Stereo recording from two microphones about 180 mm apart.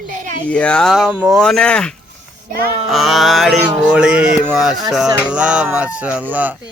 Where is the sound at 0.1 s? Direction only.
45° right (ahead or behind).